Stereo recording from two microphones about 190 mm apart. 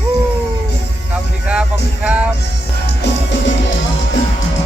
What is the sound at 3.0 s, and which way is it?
Music, 75° left (ahead or behind).